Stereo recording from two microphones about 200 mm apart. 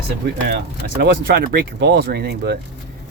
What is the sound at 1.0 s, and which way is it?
Speech, 50° right (ahead or behind).